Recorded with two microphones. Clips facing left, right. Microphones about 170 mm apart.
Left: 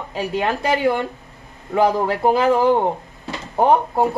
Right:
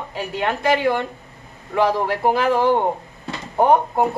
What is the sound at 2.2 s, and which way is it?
Speech, 25° left (ahead or behind).